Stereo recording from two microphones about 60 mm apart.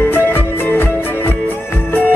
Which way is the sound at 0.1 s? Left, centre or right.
Left.